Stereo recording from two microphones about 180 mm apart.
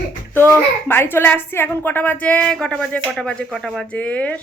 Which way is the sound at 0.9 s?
10° left (ahead or behind).